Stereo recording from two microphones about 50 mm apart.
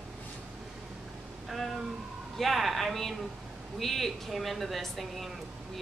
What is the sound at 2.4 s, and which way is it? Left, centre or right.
A woman's voice, centre.